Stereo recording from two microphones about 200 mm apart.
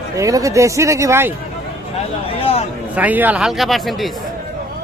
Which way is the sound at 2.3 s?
30° left (ahead or behind).